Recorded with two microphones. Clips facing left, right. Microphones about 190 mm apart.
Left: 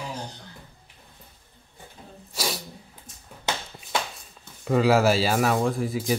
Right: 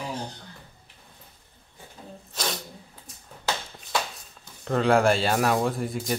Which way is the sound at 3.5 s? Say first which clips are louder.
Even; 20° left (ahead or behind).